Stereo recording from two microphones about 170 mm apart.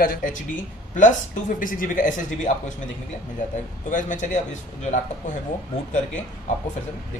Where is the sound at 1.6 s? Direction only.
55° left (ahead or behind).